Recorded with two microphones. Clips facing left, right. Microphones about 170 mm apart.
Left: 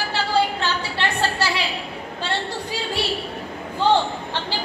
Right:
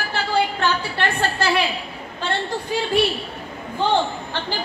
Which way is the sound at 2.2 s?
55° right (ahead or behind).